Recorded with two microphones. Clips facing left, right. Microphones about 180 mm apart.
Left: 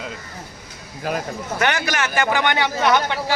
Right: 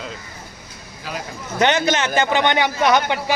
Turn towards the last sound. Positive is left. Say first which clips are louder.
# right 1 dB
turn(degrees=-15)  # may be behind; listen again after turning